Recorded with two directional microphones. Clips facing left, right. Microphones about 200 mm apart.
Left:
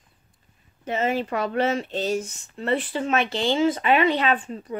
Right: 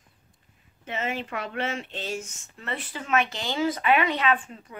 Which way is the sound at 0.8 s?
40° left (ahead or behind).